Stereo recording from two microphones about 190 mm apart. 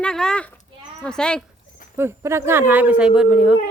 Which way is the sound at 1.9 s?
15° right (ahead or behind).